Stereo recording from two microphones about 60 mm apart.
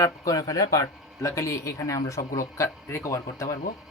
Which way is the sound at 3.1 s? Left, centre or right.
Left.